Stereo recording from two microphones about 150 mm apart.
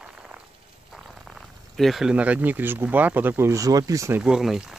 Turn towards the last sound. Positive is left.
turn(degrees=-5)  # may be behind; listen again after turning